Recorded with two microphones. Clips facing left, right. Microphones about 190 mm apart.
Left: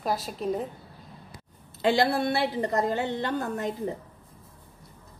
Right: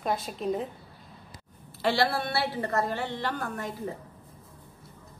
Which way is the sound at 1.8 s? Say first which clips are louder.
Left 3 dB; 20° left (ahead or behind).